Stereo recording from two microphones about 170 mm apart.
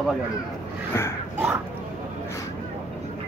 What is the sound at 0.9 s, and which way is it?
Speech, 15° left (ahead or behind).